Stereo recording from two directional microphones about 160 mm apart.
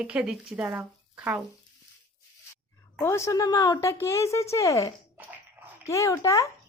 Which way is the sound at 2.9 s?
15° left (ahead or behind).